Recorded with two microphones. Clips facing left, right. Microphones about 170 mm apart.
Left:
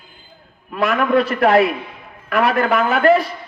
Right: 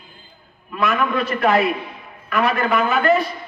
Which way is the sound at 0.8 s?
75° left (ahead or behind).